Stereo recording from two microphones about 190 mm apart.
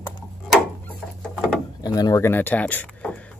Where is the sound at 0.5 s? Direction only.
Centre (ahead or behind).